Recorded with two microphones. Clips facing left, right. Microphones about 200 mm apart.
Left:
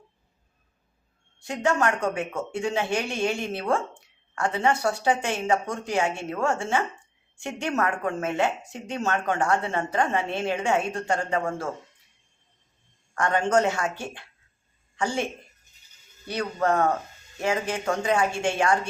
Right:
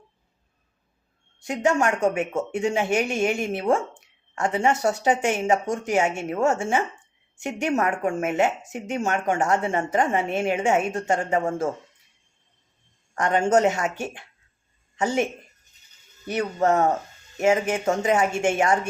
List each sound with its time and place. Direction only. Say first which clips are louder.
1.5 s a woman's voice: right 2 dB; 20° right (ahead or behind)
13.1 s a woman's voice: right 2 dB; 20° right (ahead or behind)